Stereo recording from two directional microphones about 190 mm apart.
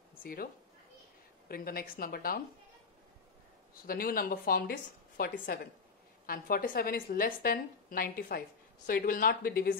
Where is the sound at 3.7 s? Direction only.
50° left (ahead or behind).